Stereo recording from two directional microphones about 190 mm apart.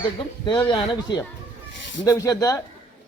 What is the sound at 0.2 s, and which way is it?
Speech, 25° left (ahead or behind).